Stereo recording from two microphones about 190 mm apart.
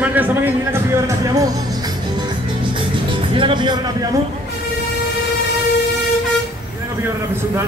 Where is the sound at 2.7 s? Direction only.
25° right (ahead or behind).